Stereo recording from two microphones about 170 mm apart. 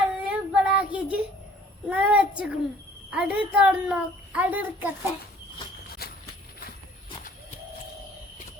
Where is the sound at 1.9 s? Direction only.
5° right (ahead or behind).